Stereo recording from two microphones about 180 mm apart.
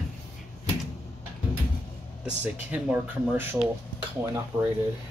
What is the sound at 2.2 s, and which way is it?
Speech, 10° right (ahead or behind).